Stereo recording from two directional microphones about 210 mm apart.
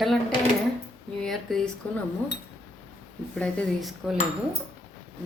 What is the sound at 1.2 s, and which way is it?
Speech, centre (ahead or behind).